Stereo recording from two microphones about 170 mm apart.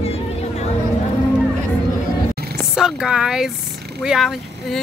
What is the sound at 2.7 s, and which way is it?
Speech, 5° right (ahead or behind).